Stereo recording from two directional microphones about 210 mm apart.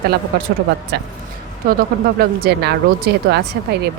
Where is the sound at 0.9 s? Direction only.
55° right (ahead or behind).